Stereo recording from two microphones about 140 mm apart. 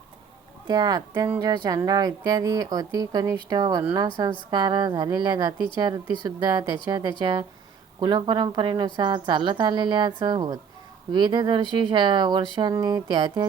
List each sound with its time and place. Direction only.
0.7 s a woman's voice: 30° right (ahead or behind)